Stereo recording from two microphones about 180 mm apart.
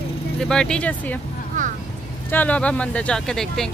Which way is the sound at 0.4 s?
5° left (ahead or behind).